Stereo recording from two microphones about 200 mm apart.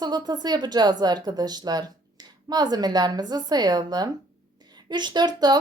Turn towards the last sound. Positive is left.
turn(degrees=-20)  # may be behind; listen again after turning